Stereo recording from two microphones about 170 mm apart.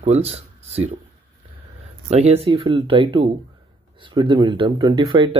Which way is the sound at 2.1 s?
40° right (ahead or behind).